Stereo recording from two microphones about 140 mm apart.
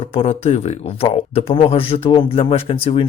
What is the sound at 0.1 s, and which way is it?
Speech, 45° left (ahead or behind).